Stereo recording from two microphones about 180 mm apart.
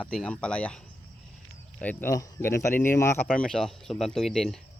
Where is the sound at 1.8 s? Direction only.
10° left (ahead or behind).